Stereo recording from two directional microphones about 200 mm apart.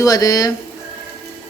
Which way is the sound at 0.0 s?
15° left (ahead or behind).